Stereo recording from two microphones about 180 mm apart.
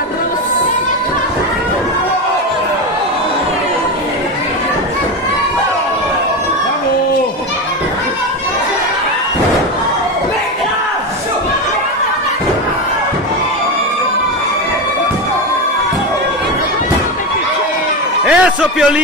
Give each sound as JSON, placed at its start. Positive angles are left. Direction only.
{"t": 18.3, "sound": "music", "side_deg": -5}